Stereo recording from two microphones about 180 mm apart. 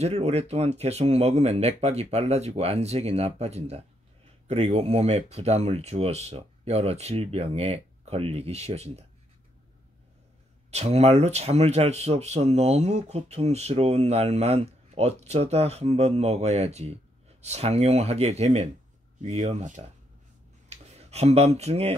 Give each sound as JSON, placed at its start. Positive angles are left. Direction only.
{"t": 0.0, "sound": "speech", "side_deg": -35}
{"t": 10.7, "sound": "speech", "side_deg": -35}